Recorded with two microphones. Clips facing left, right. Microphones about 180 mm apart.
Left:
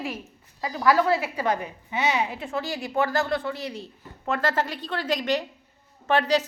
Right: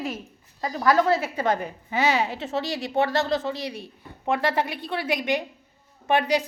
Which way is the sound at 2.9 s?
20° right (ahead or behind).